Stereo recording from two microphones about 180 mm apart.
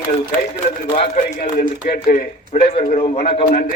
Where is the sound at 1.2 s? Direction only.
55° left (ahead or behind); by 2.9 s 35° left (ahead or behind).